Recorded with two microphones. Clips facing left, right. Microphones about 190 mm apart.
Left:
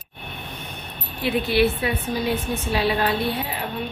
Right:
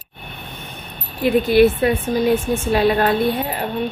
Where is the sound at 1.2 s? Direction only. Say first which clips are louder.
Right 7 dB; 45° right (ahead or behind).